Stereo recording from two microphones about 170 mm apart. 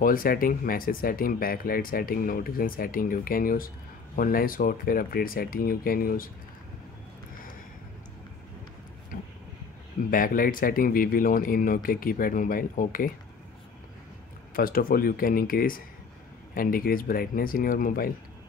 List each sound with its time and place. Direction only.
0.0 s speech: 55° left (ahead or behind)
9.1 s vehicle: 55° left (ahead or behind)
10.1 s speech: 55° left (ahead or behind)
14.5 s speech: 60° left (ahead or behind)